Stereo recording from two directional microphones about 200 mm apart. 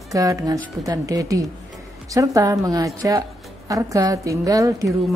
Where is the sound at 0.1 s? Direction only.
15° right (ahead or behind).